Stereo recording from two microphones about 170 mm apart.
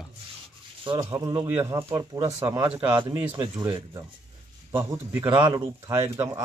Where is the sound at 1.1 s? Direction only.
30° right (ahead or behind).